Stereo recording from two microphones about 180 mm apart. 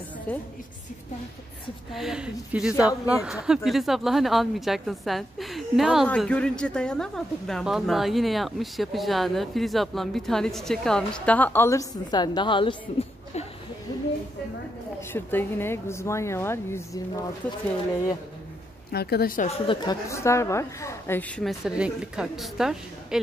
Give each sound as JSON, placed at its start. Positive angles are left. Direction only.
{"t": 0.3, "sound": "speech", "side_deg": 10}
{"t": 2.0, "sound": "a woman's voice", "side_deg": -5}
{"t": 15.1, "sound": "speech", "side_deg": 10}
{"t": 18.9, "sound": "a woman's voice", "side_deg": 60}
{"t": 19.4, "sound": "a woman's voice", "side_deg": 35}
{"t": 20.1, "sound": "a woman's voice", "side_deg": 15}